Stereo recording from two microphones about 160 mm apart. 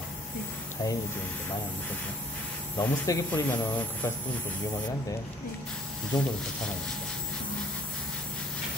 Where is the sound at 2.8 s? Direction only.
20° left (ahead or behind).